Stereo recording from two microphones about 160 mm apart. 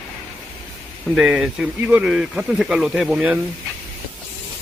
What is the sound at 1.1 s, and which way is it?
Speech, 5° right (ahead or behind).